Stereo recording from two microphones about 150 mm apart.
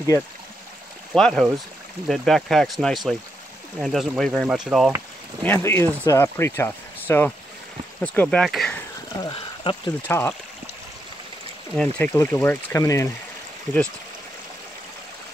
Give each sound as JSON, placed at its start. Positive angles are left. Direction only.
{"t": 1.1, "sound": "speech", "side_deg": 5}
{"t": 5.4, "sound": "speech", "side_deg": 15}
{"t": 9.2, "sound": "speech", "side_deg": 30}
{"t": 10.0, "sound": "speech", "side_deg": 10}
{"t": 11.7, "sound": "speech", "side_deg": 5}
{"t": 12.1, "sound": "speech", "side_deg": 15}